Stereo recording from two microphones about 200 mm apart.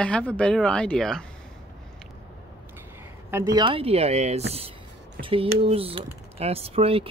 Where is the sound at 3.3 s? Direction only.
15° right (ahead or behind).